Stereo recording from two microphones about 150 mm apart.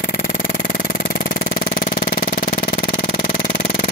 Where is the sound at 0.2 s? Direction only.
65° left (ahead or behind).